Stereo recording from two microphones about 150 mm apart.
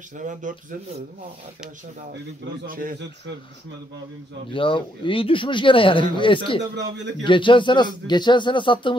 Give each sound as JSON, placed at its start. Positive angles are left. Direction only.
{"t": 0.2, "sound": "speech", "side_deg": -60}
{"t": 2.6, "sound": "speech", "side_deg": -70}
{"t": 4.5, "sound": "speech", "side_deg": 35}